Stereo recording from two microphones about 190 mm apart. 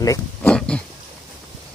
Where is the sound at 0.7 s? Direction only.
5° left (ahead or behind).